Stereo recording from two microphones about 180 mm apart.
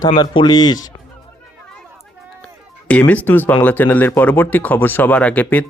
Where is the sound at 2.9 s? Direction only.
5° left (ahead or behind).